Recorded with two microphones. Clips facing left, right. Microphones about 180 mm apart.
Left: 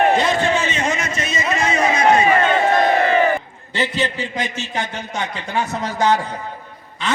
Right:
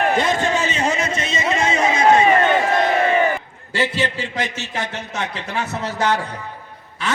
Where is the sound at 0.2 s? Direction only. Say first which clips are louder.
Left 1 dB; 45° right (ahead or behind); by 2.6 s 25° right (ahead or behind).